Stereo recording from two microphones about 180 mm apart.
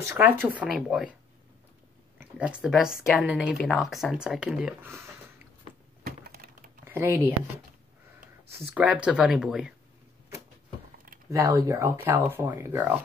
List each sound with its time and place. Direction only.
0.0 s speech: 15° right (ahead or behind)
2.1 s speech: 5° right (ahead or behind)
6.0 s a sound: 60° right (ahead or behind)
6.8 s speech: 15° right (ahead or behind)
8.5 s speech: 5° right (ahead or behind)
11.2 s speech: 15° right (ahead or behind)